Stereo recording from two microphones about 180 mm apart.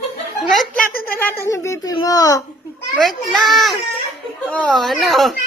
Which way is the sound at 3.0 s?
Centre (ahead or behind).